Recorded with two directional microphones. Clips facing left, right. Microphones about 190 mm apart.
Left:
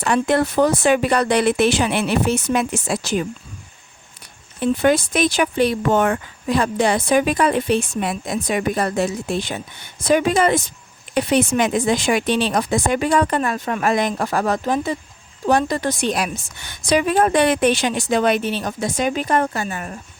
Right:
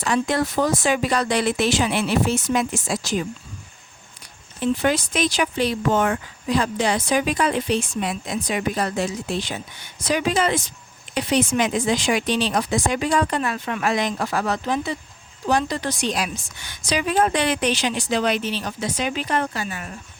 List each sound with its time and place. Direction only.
0.0 s speech: 60° left (ahead or behind)
4.7 s speech: 55° left (ahead or behind)